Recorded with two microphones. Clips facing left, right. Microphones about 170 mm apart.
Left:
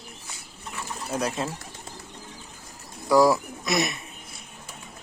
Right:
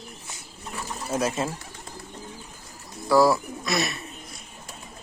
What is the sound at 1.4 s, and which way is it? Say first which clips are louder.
Speech: right 2 dB; 5° right (ahead or behind).